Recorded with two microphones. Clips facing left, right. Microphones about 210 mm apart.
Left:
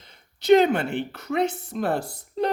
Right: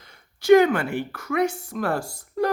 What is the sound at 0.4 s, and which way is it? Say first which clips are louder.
Speech: right 2 dB; 20° left (ahead or behind).